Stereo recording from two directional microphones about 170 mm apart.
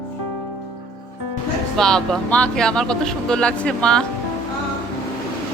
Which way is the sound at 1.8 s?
5° left (ahead or behind).